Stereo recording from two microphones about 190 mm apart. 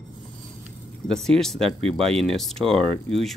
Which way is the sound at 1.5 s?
30° right (ahead or behind).